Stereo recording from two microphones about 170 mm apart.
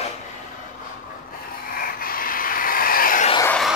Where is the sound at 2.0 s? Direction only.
55° left (ahead or behind).